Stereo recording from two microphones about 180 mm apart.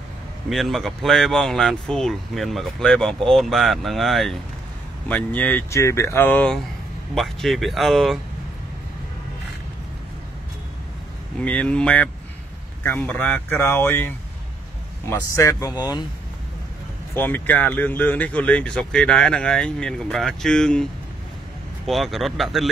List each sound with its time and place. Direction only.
0.5 s speech: centre (ahead or behind)
11.3 s speech: 5° left (ahead or behind)
17.1 s speech: 10° left (ahead or behind)
21.8 s speech: centre (ahead or behind)